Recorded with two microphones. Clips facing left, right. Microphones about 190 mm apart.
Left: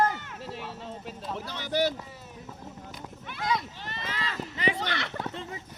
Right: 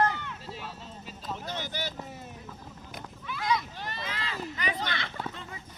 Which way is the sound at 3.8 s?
45° right (ahead or behind).